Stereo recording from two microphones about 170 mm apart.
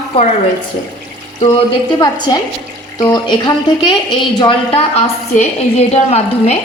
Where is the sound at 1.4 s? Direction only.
25° left (ahead or behind).